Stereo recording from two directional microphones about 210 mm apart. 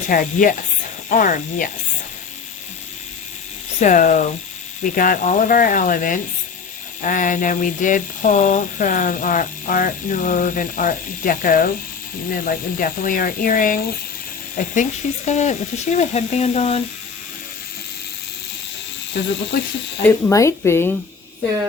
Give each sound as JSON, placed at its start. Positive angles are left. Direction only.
{"t": 0.1, "sound": "speech", "side_deg": 40}
{"t": 3.8, "sound": "speech", "side_deg": 40}
{"t": 20.1, "sound": "speech", "side_deg": 10}